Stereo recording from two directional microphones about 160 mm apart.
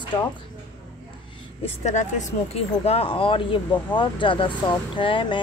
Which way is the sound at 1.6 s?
45° left (ahead or behind).